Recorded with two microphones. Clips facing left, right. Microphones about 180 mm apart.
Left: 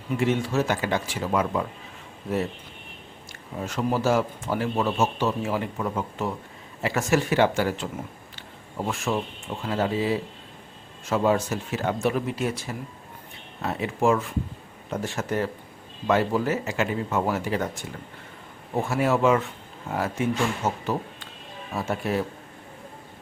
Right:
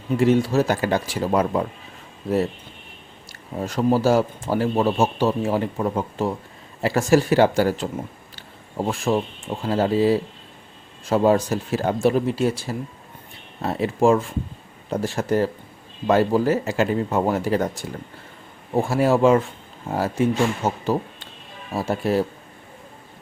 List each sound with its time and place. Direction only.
0.2 s a man's voice: 35° right (ahead or behind)
3.6 s a man's voice: 35° right (ahead or behind)